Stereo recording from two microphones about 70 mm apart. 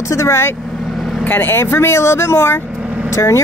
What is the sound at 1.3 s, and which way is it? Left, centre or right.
Speech, left.